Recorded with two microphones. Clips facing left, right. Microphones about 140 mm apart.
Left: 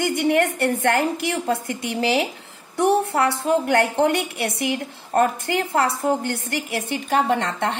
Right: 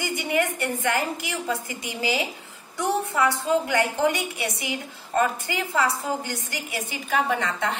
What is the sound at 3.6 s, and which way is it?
A woman's voice, 65° left (ahead or behind).